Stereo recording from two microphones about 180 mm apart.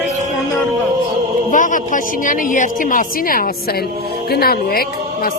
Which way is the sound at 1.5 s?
45° left (ahead or behind).